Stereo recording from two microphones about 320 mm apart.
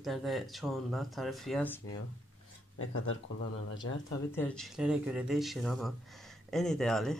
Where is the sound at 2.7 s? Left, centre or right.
Left.